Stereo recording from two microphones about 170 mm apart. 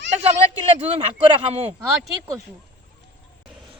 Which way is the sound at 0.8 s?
35° right (ahead or behind).